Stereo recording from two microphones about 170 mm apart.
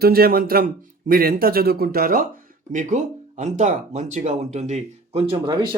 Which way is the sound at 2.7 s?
45° right (ahead or behind).